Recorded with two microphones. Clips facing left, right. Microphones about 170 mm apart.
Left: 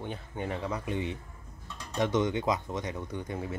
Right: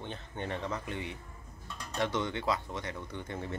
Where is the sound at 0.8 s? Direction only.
20° left (ahead or behind).